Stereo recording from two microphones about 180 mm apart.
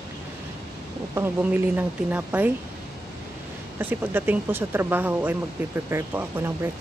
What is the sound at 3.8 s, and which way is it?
Speech, 10° right (ahead or behind).